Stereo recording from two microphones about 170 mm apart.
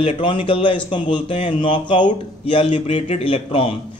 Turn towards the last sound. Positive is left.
turn(degrees=30)  # may be behind; listen again after turning